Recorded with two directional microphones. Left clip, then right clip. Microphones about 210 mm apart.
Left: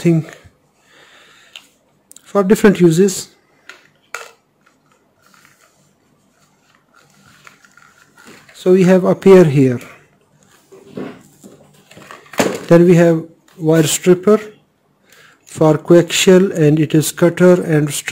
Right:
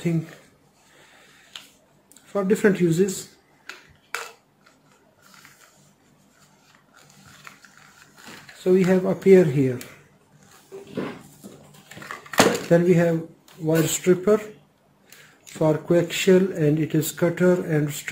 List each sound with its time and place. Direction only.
2.3 s speech: 55° left (ahead or behind)
8.6 s speech: 55° left (ahead or behind)
12.6 s speech: 55° left (ahead or behind); by 14.5 s 40° left (ahead or behind)
15.6 s speech: 55° left (ahead or behind)